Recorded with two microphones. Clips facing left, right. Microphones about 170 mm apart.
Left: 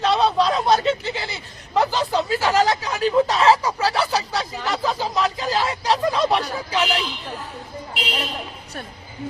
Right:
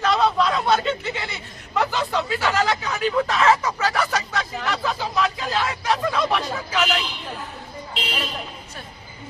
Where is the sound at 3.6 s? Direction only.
30° left (ahead or behind).